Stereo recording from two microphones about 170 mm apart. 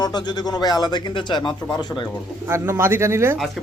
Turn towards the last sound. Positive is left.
turn(degrees=-15)  # may be behind; listen again after turning